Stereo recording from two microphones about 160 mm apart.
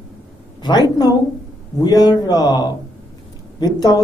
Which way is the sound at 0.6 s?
25° left (ahead or behind).